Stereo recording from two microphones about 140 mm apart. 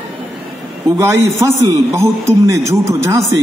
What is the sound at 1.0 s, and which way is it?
A man's voice, 20° right (ahead or behind).